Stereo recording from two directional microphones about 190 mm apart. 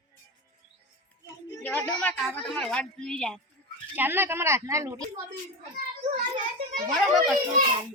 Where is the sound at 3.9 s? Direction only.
10° right (ahead or behind).